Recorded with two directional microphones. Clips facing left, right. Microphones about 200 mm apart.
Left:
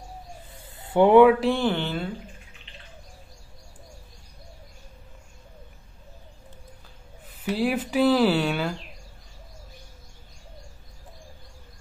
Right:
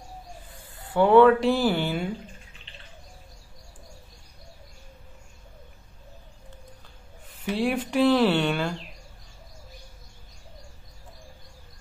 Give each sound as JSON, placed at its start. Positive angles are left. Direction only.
{"t": 0.7, "sound": "a sound", "side_deg": 20}
{"t": 1.4, "sound": "speech", "side_deg": -5}
{"t": 7.4, "sound": "speech", "side_deg": 5}